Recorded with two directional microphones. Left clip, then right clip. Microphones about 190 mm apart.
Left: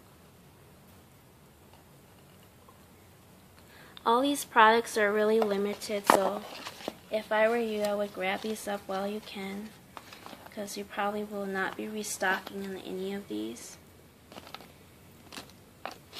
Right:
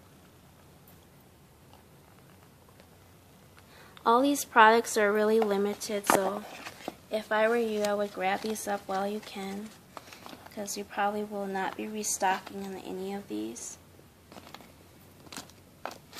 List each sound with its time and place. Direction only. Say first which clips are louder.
4.0 s speech: right 2 dB; 20° right (ahead or behind)
7.1 s a woman's voice: even; 25° right (ahead or behind)